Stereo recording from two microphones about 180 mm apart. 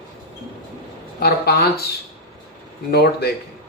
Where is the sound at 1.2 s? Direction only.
60° left (ahead or behind).